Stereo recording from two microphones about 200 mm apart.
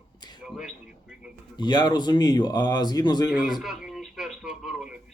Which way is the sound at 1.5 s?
20° left (ahead or behind).